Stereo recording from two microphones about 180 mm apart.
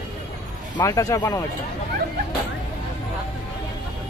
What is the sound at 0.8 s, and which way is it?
Speech, 20° left (ahead or behind).